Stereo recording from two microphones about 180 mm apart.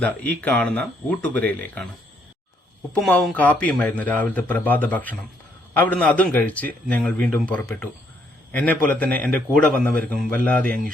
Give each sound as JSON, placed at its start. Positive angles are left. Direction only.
{"t": 0.0, "sound": "speech", "side_deg": 10}
{"t": 2.9, "sound": "speech", "side_deg": 5}